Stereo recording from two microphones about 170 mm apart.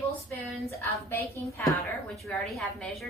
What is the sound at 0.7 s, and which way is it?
Speech, 15° left (ahead or behind).